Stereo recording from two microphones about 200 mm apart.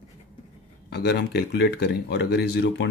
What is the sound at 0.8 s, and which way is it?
Speech, 55° left (ahead or behind).